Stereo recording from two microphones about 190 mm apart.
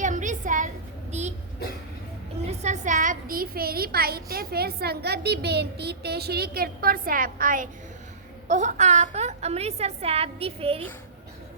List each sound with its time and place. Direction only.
0.0 s a sound: 40° right (ahead or behind)
1.1 s cough: 35° right (ahead or behind)
2.5 s a woman's voice: 35° right (ahead or behind)